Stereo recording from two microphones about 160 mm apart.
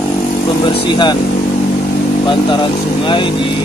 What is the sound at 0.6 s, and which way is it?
Speech, 30° left (ahead or behind).